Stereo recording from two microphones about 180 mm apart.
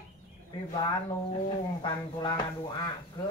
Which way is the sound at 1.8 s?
25° left (ahead or behind).